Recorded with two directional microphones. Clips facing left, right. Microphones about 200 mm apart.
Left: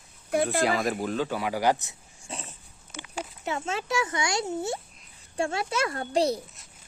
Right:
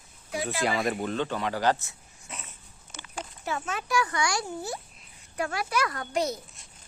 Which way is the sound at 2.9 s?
15° left (ahead or behind).